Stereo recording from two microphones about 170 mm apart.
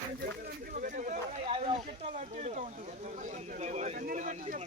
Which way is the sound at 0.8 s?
50° right (ahead or behind).